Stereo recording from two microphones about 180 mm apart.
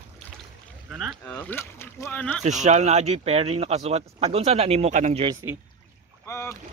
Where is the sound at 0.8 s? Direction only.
Centre (ahead or behind).